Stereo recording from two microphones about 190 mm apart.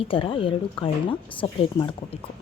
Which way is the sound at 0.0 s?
25° left (ahead or behind).